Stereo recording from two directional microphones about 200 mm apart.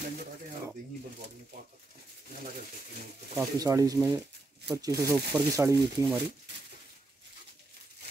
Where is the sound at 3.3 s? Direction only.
15° right (ahead or behind).